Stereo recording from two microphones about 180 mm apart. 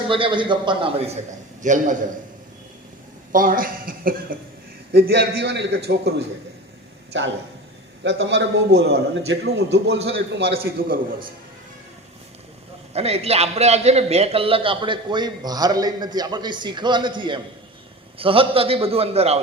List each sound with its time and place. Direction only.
0.1 s a man's voice: 30° right (ahead or behind); by 2.0 s 45° right (ahead or behind)
3.3 s speech: 50° right (ahead or behind)
4.9 s a man's voice: 65° right (ahead or behind)
7.1 s a man's voice: 90° right
10.6 s a man's voice: 55° right (ahead or behind)
12.9 s a man's voice: 35° right (ahead or behind)